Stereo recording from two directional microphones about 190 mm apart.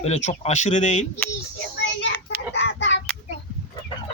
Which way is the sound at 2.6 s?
70° left (ahead or behind).